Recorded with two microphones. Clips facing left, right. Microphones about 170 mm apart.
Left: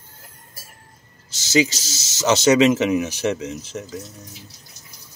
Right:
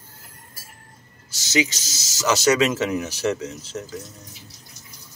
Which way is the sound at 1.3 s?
30° left (ahead or behind).